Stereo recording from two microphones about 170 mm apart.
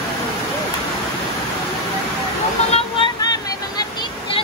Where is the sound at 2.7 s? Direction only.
25° left (ahead or behind).